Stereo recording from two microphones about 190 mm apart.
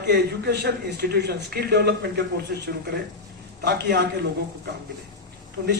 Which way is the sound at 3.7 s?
65° right (ahead or behind).